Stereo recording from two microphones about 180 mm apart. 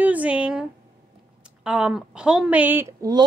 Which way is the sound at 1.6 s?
5° right (ahead or behind).